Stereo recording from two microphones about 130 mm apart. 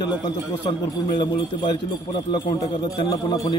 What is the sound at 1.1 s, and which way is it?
Speech, 40° left (ahead or behind).